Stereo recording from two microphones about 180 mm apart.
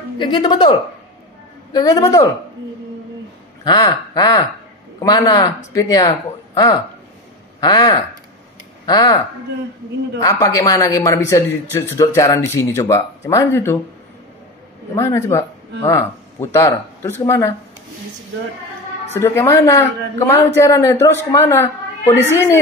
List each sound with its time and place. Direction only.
0.2 s speech: 25° left (ahead or behind)
3.6 s speech: 20° left (ahead or behind)
10.2 s a man's voice: 20° left (ahead or behind)
15.0 s a man's voice: 15° left (ahead or behind)
19.1 s a man's voice: 15° left (ahead or behind)